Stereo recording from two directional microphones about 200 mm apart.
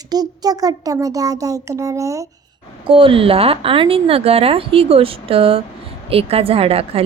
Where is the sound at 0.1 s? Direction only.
20° right (ahead or behind).